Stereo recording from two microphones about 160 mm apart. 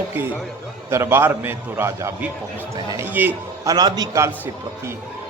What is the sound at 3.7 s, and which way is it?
Speech, 25° right (ahead or behind).